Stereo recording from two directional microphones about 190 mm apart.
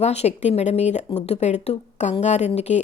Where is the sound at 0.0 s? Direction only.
35° left (ahead or behind).